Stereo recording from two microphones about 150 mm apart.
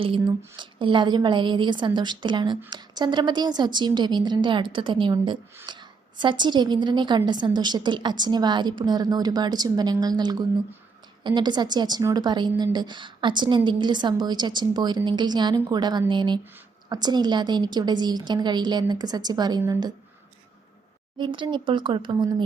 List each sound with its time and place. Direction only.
0.0 s a woman's voice: 35° right (ahead or behind)
21.2 s a woman's voice: 30° right (ahead or behind)